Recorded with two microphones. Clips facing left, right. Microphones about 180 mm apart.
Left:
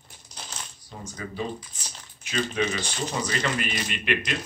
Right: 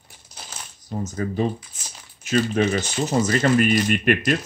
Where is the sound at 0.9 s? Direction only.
45° right (ahead or behind).